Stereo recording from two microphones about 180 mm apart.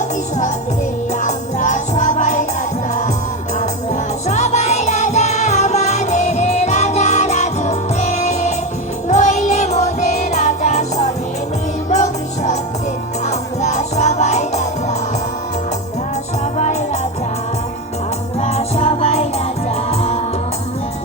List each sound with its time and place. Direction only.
1.2 s music: 40° left (ahead or behind)
4.3 s music: 40° left (ahead or behind)
13.2 s music: 40° left (ahead or behind)
16.6 s music: 40° left (ahead or behind)
18.3 s music: 35° left (ahead or behind)